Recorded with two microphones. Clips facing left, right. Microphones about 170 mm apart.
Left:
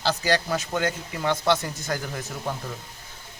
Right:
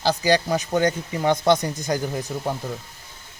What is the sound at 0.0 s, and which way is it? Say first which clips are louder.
Speech: right 4 dB; 15° right (ahead or behind).